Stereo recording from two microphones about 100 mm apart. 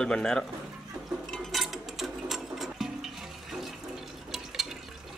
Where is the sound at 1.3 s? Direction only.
Centre (ahead or behind).